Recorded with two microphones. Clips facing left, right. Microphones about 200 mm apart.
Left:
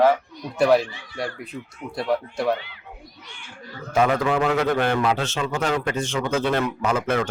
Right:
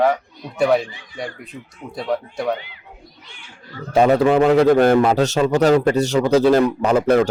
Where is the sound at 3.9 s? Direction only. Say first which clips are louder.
Right 6 dB; 35° right (ahead or behind).